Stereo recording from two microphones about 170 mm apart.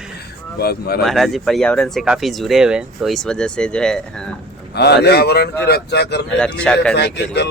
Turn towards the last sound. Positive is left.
turn(degrees=80)